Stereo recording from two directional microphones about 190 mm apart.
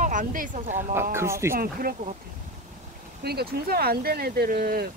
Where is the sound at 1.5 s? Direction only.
50° right (ahead or behind).